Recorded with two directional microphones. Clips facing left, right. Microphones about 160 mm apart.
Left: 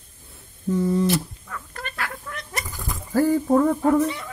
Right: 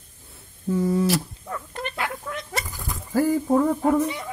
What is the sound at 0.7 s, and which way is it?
Speech, 10° right (ahead or behind).